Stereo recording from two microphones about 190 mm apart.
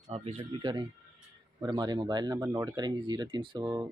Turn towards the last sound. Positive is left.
turn(degrees=-20)  # may be behind; listen again after turning